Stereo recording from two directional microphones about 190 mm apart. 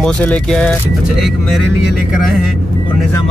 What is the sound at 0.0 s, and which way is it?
Speech, 5° left (ahead or behind).